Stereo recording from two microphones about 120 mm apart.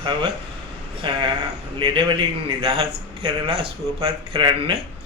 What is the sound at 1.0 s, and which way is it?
A man's voice, 45° right (ahead or behind).